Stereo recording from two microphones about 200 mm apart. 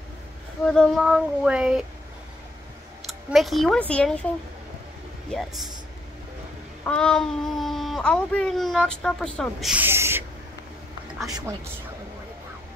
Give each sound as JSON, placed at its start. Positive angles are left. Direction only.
{"t": 0.7, "sound": "speech", "side_deg": 0}
{"t": 3.1, "sound": "speech", "side_deg": 0}
{"t": 5.3, "sound": "speech", "side_deg": 0}
{"t": 6.8, "sound": "speech", "side_deg": 5}
{"t": 11.2, "sound": "speech", "side_deg": -15}